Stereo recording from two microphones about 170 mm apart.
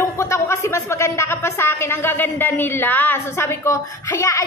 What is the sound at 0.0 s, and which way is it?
Speech, 15° left (ahead or behind).